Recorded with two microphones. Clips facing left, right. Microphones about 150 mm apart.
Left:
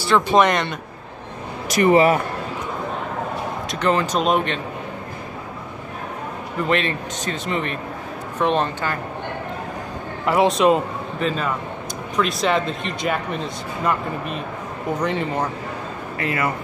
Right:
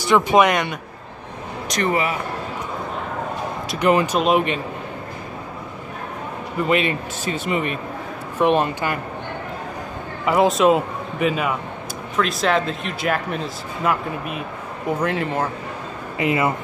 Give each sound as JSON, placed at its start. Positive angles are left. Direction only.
{"t": 0.0, "sound": "a man's voice", "side_deg": -15}
{"t": 1.7, "sound": "speech", "side_deg": 5}
{"t": 3.8, "sound": "a man's voice", "side_deg": -10}
{"t": 6.6, "sound": "a man's voice", "side_deg": -10}
{"t": 10.2, "sound": "a man's voice", "side_deg": 0}
{"t": 16.2, "sound": "speech", "side_deg": -20}